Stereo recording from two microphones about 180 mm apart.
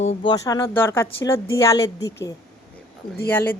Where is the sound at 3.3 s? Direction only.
10° left (ahead or behind).